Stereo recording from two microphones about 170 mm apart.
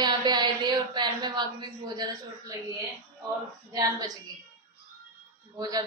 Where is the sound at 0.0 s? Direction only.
25° right (ahead or behind).